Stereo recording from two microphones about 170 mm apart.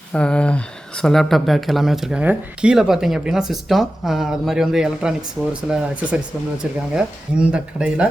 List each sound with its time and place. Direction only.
0.1 s speech: 5° left (ahead or behind)
6.7 s speech: 5° right (ahead or behind)